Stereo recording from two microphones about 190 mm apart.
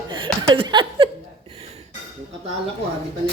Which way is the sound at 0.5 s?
25° right (ahead or behind).